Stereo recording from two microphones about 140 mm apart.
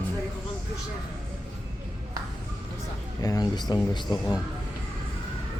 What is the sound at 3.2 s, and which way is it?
Speech, 25° left (ahead or behind).